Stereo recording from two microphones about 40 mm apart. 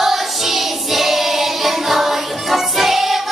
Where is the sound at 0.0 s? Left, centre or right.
Centre.